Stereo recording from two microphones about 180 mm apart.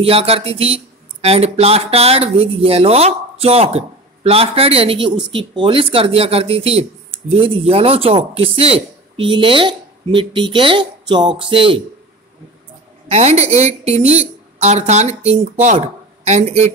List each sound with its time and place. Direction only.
0.0 s speech: 30° right (ahead or behind)
13.1 s speech: 35° right (ahead or behind)